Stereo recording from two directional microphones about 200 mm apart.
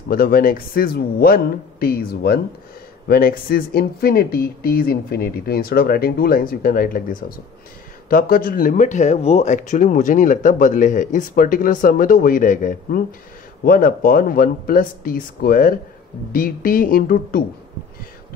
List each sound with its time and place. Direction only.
0.1 s speech: 45° left (ahead or behind)